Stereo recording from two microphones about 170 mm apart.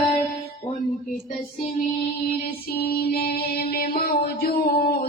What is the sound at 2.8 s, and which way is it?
Child singing, 60° left (ahead or behind).